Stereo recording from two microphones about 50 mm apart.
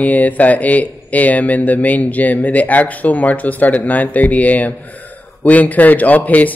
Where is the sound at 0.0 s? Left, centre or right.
Left.